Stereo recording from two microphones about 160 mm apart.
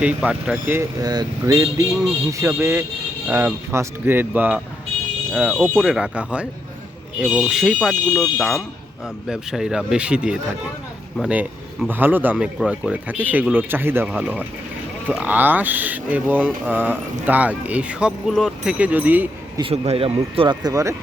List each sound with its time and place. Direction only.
0.0 s speech: 10° right (ahead or behind)
1.0 s speech: 25° right (ahead or behind)
19.5 s speech: 35° right (ahead or behind)